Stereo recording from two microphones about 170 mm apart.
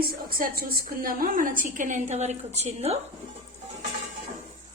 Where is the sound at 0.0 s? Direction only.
60° right (ahead or behind); by 3.0 s 40° right (ahead or behind).